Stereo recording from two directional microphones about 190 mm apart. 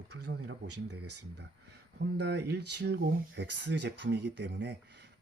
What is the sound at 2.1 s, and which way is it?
Speech, 65° right (ahead or behind).